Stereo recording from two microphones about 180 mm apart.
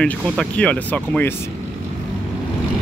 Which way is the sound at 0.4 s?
5° left (ahead or behind).